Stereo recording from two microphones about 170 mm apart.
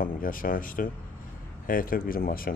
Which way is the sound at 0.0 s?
55° left (ahead or behind).